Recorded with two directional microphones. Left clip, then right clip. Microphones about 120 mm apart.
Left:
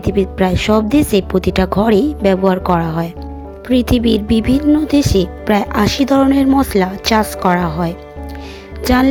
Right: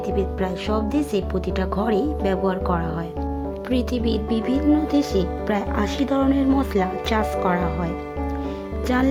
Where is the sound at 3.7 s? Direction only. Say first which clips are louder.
Left 10 dB; 60° left (ahead or behind); by 9.1 s 40° left (ahead or behind).